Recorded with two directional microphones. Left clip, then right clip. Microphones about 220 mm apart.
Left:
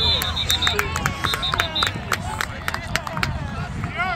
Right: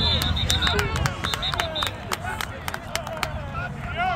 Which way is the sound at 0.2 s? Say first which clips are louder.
Left 3 dB; 45° right (ahead or behind).